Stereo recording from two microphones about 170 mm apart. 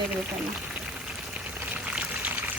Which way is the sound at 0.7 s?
5° right (ahead or behind).